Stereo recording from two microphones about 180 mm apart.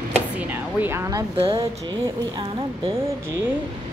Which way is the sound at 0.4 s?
10° right (ahead or behind).